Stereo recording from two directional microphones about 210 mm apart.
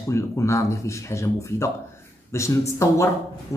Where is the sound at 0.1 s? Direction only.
15° left (ahead or behind).